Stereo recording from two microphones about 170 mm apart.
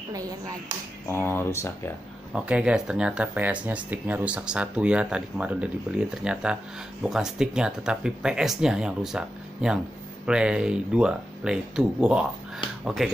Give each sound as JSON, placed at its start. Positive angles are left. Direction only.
{"t": 0.1, "sound": "speech", "side_deg": -20}
{"t": 1.0, "sound": "speech", "side_deg": 15}
{"t": 2.3, "sound": "speech", "side_deg": -5}